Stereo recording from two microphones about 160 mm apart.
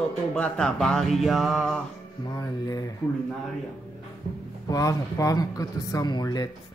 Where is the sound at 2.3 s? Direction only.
20° left (ahead or behind).